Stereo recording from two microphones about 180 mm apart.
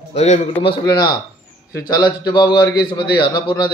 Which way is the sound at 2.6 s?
60° left (ahead or behind).